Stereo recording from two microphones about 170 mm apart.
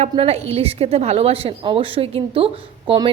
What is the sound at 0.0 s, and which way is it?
A woman's voice, 40° right (ahead or behind).